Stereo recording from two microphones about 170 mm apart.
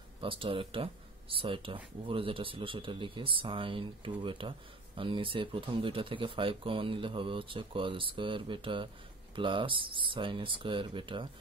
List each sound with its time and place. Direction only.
0.2 s speech: 30° right (ahead or behind)